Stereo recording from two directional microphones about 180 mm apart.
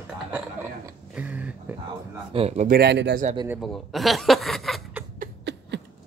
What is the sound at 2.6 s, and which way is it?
Speech, 60° right (ahead or behind).